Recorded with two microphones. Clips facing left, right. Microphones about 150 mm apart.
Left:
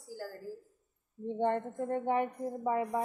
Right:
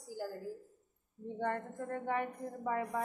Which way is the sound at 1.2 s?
25° left (ahead or behind).